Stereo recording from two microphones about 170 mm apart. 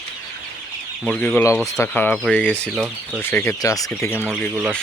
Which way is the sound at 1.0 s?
5° left (ahead or behind).